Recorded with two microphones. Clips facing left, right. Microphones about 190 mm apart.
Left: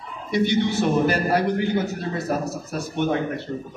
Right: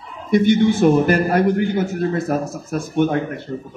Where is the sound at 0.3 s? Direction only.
50° right (ahead or behind).